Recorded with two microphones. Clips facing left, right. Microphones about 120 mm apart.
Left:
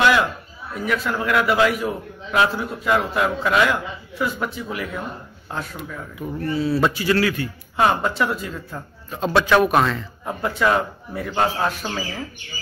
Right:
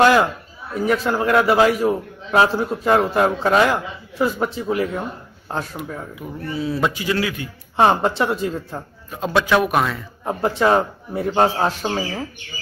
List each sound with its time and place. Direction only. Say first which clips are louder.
0.0 s a man's voice: right 4 dB; 40° right (ahead or behind)
6.2 s a man's voice: left 4 dB; 10° right (ahead or behind)
7.7 s speech: right 3 dB; 30° right (ahead or behind)
9.5 s a man's voice: left 2 dB; 10° right (ahead or behind)
10.2 s speech: right 3 dB; 30° right (ahead or behind)